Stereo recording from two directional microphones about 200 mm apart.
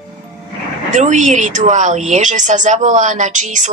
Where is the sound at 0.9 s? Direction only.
40° right (ahead or behind).